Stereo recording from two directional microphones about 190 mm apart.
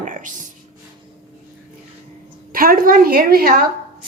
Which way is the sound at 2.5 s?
50° right (ahead or behind).